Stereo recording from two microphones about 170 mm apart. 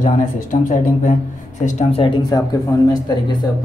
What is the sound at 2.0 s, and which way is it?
Speech, 25° left (ahead or behind).